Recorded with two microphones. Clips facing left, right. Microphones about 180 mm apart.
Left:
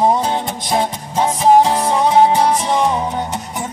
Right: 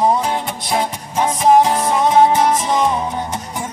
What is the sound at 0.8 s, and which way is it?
Music, 30° left (ahead or behind).